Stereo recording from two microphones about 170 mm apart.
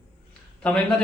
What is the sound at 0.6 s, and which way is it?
Speech, 10° left (ahead or behind).